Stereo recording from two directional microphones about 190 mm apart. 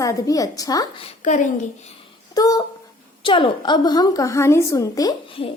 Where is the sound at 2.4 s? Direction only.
20° left (ahead or behind).